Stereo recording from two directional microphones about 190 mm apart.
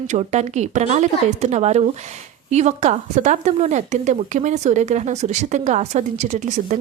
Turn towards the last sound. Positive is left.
turn(degrees=-40)  # may be behind; listen again after turning